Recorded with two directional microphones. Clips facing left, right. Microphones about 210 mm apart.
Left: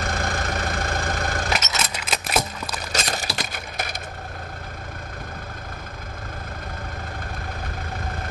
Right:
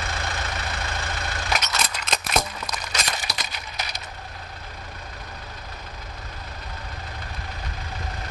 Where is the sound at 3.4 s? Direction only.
50° left (ahead or behind).